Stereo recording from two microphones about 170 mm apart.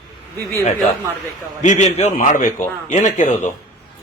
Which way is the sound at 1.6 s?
40° left (ahead or behind).